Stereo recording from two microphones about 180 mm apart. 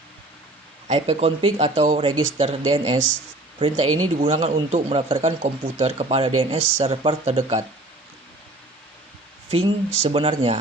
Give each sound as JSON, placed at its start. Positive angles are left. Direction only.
{"t": 0.9, "sound": "speech", "side_deg": -35}
{"t": 9.5, "sound": "speech", "side_deg": -30}